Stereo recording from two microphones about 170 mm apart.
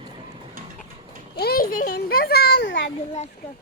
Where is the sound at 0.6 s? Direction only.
55° right (ahead or behind).